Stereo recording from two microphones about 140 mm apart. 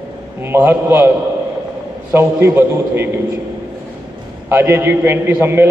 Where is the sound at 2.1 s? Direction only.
15° right (ahead or behind).